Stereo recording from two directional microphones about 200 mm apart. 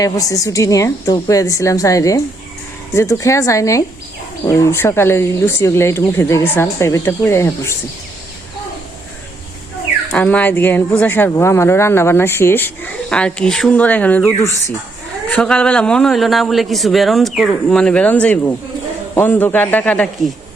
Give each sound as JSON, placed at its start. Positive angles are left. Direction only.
{"t": 0.0, "sound": "speech", "side_deg": 15}
{"t": 10.1, "sound": "a man's voice", "side_deg": 5}